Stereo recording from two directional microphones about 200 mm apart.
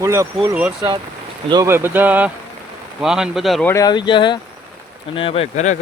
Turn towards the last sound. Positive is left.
turn(degrees=30)  # may be behind; listen again after turning